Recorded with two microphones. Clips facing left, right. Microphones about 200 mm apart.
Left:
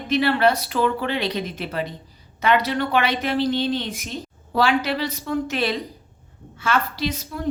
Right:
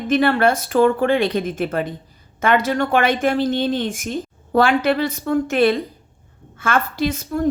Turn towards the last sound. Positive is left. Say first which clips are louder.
# right 6 dB
turn(degrees=-50)  # may be behind; listen again after turning